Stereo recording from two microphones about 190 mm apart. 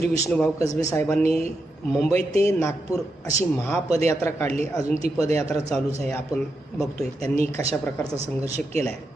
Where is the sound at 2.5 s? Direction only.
15° left (ahead or behind).